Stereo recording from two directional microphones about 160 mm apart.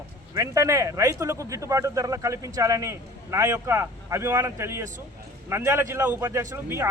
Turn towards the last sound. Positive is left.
turn(degrees=-15)  # may be behind; listen again after turning